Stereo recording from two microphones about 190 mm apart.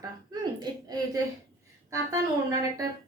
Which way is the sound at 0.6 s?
20° right (ahead or behind).